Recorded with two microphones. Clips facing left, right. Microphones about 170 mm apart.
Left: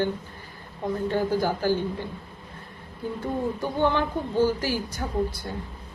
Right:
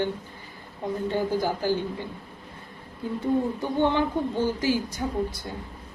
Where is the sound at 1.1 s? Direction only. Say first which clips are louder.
Left 1 dB; 15° right (ahead or behind).